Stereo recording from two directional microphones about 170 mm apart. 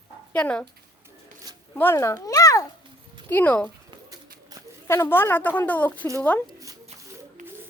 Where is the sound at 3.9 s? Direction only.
20° right (ahead or behind).